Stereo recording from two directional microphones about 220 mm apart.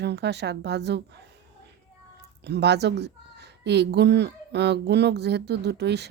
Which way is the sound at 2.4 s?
50° right (ahead or behind).